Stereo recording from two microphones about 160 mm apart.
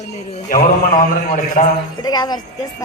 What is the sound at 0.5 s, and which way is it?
A man's voice, 55° left (ahead or behind).